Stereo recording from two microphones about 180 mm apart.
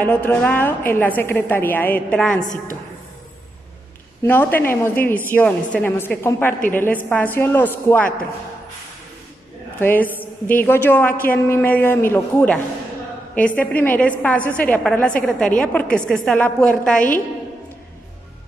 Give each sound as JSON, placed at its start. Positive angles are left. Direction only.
{"t": 0.0, "sound": "a woman's voice", "side_deg": 10}
{"t": 4.2, "sound": "a woman's voice", "side_deg": 10}
{"t": 9.8, "sound": "a man's voice", "side_deg": 10}
{"t": 13.6, "sound": "a woman's voice", "side_deg": 10}